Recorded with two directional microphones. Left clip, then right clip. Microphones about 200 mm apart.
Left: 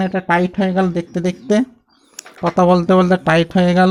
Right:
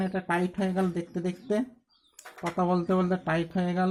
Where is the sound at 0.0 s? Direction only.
40° left (ahead or behind).